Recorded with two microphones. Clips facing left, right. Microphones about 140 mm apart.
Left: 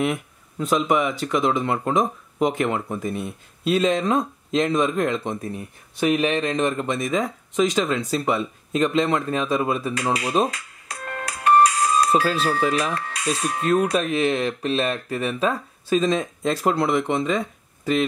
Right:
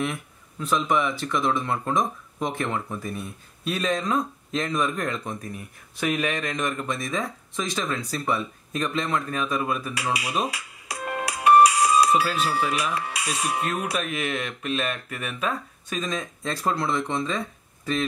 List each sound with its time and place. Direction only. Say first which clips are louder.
0.6 s speech: left 3 dB; 20° left (ahead or behind)
10.5 s music: right 1 dB; 10° right (ahead or behind)
12.2 s speech: left 3 dB; 10° right (ahead or behind)
13.9 s speech: left 7 dB; 30° left (ahead or behind)